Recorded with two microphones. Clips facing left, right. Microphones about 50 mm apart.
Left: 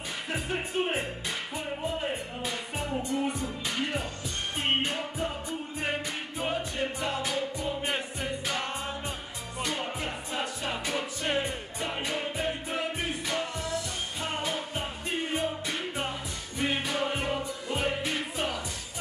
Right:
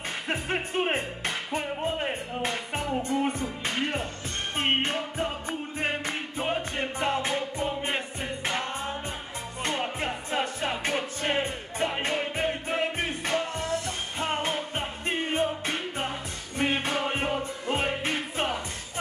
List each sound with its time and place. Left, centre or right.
0.3 s music: right